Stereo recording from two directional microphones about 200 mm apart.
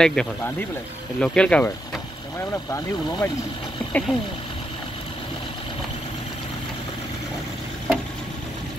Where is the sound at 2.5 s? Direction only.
15° left (ahead or behind).